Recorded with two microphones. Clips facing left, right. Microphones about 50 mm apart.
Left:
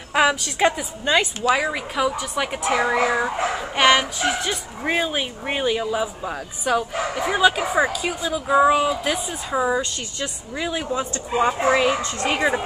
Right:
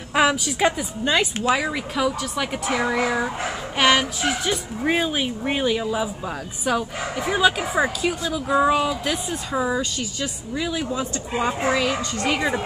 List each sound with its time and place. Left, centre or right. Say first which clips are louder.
0.1 s a woman's voice: even; centre
3.7 s speech: left 1 dB; centre
10.5 s a woman's voice: left 1 dB; centre
11.6 s a woman's voice: left 3 dB; left